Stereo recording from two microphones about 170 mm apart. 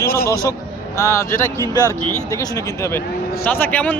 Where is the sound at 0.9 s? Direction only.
20° left (ahead or behind).